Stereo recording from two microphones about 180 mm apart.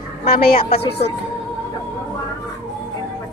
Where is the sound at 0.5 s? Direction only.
30° left (ahead or behind).